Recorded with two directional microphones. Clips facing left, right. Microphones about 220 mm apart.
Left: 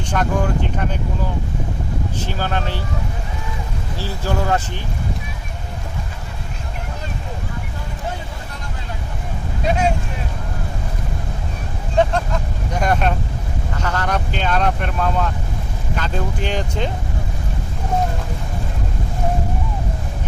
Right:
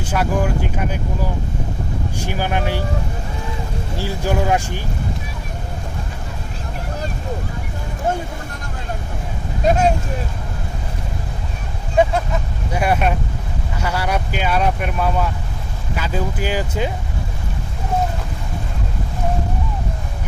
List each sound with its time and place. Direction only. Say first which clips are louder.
0.0 s speech: right 1 dB; 5° right (ahead or behind)
2.1 s speech: right 3 dB; 10° right (ahead or behind)
3.9 s speech: right 2 dB; 15° right (ahead or behind)
8.1 s vehicle: right 8 dB; 45° right (ahead or behind)
11.9 s speech: right 1 dB; 10° right (ahead or behind)